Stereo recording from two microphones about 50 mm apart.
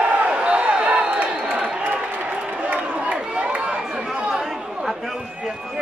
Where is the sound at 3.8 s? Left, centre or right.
Centre.